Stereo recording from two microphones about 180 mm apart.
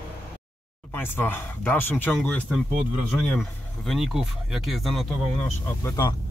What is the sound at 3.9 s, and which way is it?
Speech, centre (ahead or behind).